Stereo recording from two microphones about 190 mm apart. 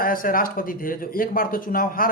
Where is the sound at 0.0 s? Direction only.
50° left (ahead or behind).